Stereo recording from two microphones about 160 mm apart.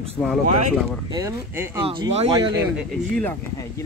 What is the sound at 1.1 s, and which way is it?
Speech, 15° right (ahead or behind).